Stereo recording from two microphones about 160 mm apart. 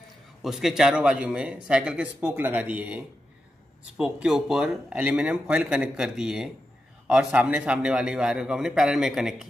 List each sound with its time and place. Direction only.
0.4 s speech: centre (ahead or behind)